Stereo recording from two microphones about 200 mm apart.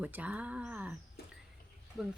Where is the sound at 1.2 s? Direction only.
50° left (ahead or behind).